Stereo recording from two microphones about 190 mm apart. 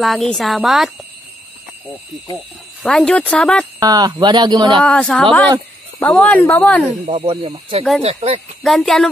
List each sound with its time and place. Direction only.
0.0 s speech: centre (ahead or behind)
2.8 s speech: 5° left (ahead or behind)
3.8 s speech: 20° right (ahead or behind)
4.8 s speech: 5° left (ahead or behind)
7.1 s speech: 30° right (ahead or behind)
8.6 s speech: centre (ahead or behind)